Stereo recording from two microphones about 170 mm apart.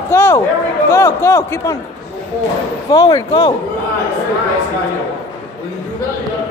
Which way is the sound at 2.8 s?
20° left (ahead or behind).